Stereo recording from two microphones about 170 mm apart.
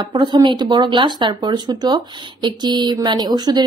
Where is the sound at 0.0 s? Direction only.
25° right (ahead or behind).